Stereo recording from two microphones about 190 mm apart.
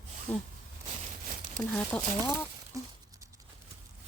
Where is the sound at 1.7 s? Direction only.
10° left (ahead or behind).